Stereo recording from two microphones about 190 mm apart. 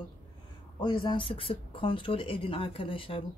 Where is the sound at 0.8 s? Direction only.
25° left (ahead or behind).